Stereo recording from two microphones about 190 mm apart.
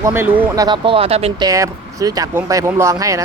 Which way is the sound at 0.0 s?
10° right (ahead or behind).